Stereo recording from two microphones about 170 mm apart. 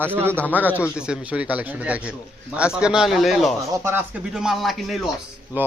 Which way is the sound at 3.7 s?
15° right (ahead or behind).